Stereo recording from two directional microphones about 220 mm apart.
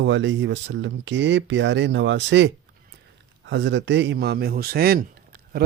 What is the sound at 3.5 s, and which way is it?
Speech, 55° right (ahead or behind).